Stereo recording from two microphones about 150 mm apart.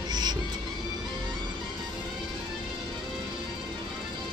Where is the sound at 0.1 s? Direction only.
30° right (ahead or behind).